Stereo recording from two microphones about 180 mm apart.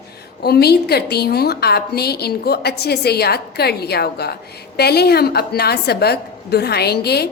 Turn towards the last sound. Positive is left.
turn(degrees=65)  # may be behind; listen again after turning